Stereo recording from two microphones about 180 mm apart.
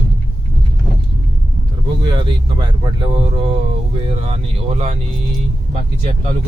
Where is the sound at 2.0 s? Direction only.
25° right (ahead or behind).